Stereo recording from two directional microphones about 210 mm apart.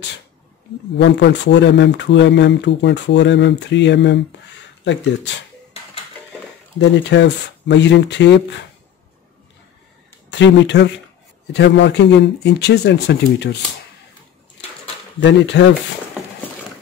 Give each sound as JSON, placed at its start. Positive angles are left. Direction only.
{"t": 0.9, "sound": "speech", "side_deg": 55}
{"t": 6.8, "sound": "speech", "side_deg": 55}
{"t": 10.3, "sound": "speech", "side_deg": 60}
{"t": 15.1, "sound": "speech", "side_deg": 55}